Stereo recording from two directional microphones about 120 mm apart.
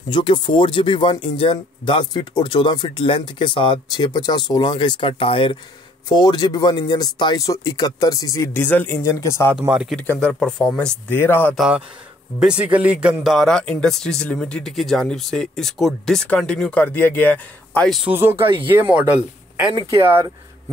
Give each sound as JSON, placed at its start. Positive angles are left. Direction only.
{"t": 0.1, "sound": "speech", "side_deg": 40}
{"t": 6.0, "sound": "speech", "side_deg": 35}
{"t": 8.5, "sound": "speech", "side_deg": 15}
{"t": 9.7, "sound": "speech", "side_deg": -5}
{"t": 9.9, "sound": "speech", "side_deg": 10}
{"t": 11.1, "sound": "speech", "side_deg": 20}
{"t": 12.4, "sound": "a man's voice", "side_deg": -10}
{"t": 18.0, "sound": "speech", "side_deg": -20}